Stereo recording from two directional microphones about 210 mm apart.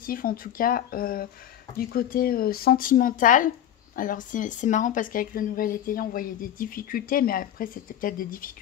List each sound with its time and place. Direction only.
0.0 s speech: 45° left (ahead or behind)